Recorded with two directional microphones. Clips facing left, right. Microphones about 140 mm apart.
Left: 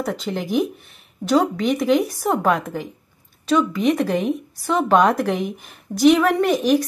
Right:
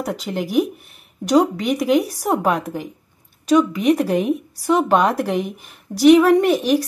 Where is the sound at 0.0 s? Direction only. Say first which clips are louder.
Right 1 dB; 5° right (ahead or behind).